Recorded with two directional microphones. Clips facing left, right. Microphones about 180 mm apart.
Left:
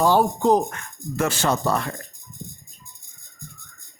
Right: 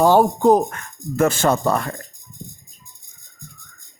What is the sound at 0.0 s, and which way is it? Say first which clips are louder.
A man's voice: right 4 dB; 45° right (ahead or behind).